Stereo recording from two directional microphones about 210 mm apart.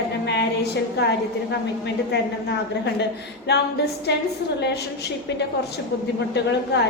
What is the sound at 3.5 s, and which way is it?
Speech, 50° left (ahead or behind).